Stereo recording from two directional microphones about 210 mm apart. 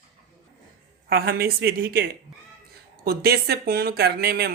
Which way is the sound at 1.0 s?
50° right (ahead or behind).